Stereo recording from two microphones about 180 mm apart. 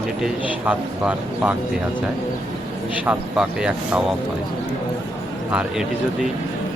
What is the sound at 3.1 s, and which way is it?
Speech, 5° right (ahead or behind).